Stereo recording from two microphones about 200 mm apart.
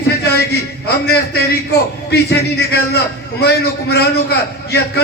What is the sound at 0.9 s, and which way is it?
A man's voice, 55° left (ahead or behind).